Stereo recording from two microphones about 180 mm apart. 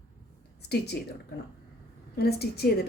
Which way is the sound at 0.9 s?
65° left (ahead or behind).